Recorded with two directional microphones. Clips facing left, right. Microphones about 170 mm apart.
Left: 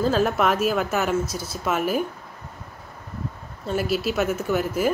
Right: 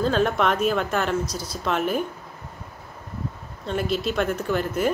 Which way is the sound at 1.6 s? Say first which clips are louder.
Left 1 dB; 5° left (ahead or behind).